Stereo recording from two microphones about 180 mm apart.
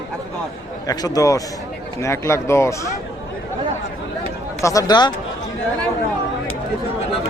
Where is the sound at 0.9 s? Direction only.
20° left (ahead or behind).